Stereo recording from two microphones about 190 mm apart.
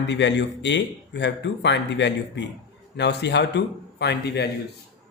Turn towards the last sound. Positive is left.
turn(degrees=60)  # may be behind; listen again after turning